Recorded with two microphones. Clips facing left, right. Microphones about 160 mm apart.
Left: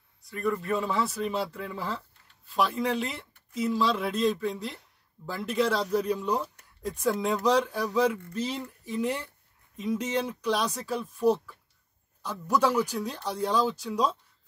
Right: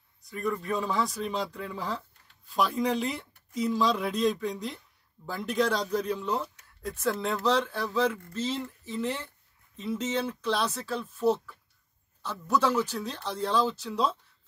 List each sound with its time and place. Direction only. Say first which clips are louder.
0.3 s speech: left 2 dB; centre (ahead or behind)